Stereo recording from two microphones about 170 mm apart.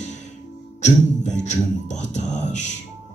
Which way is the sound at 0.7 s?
45° left (ahead or behind).